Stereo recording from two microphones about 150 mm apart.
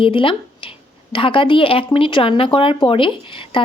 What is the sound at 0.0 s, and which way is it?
Speech, 35° left (ahead or behind).